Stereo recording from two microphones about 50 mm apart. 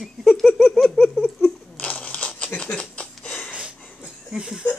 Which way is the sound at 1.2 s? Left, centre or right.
Left.